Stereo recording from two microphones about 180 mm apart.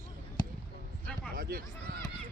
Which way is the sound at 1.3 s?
55° right (ahead or behind).